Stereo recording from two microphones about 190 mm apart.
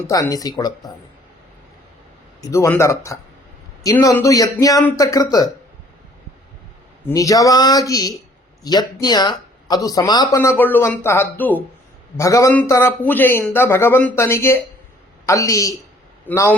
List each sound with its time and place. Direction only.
0.1 s speech: 20° left (ahead or behind)
2.4 s speech: 15° left (ahead or behind)
7.1 s speech: 20° left (ahead or behind)